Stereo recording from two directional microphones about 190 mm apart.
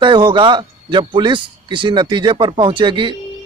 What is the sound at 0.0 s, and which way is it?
Speech, 25° right (ahead or behind).